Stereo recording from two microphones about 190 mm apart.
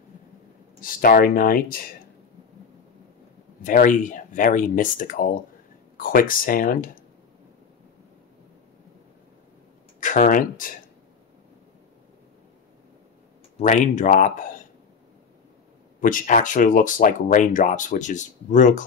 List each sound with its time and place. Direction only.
0.7 s speech: 50° left (ahead or behind)
3.6 s speech: 45° left (ahead or behind)
9.9 s speech: 40° left (ahead or behind)
13.6 s speech: 40° left (ahead or behind)
16.0 s speech: 45° left (ahead or behind)